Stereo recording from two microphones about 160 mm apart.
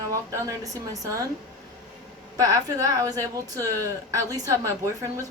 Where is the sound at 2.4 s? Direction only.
20° right (ahead or behind).